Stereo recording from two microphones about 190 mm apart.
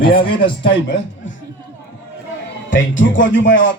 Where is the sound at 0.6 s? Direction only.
70° left (ahead or behind).